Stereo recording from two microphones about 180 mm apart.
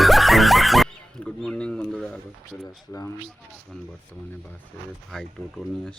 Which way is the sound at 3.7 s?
5° left (ahead or behind).